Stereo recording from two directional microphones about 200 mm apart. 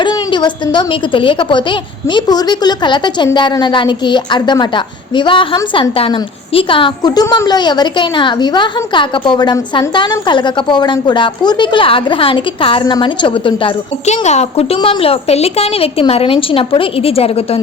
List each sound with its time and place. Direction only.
0.0 s a woman's voice: 25° left (ahead or behind)